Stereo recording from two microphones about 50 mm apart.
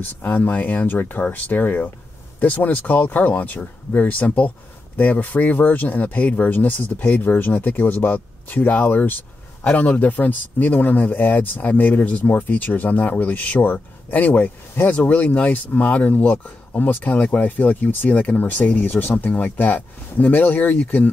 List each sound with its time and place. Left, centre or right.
0.0 s speech: left